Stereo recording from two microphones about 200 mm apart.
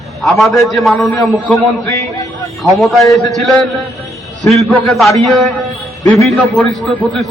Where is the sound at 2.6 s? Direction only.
Centre (ahead or behind).